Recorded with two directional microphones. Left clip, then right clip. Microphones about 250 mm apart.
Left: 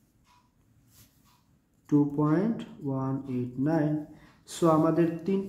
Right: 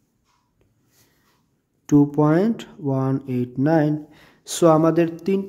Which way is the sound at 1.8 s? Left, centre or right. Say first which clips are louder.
Right 9 dB; right.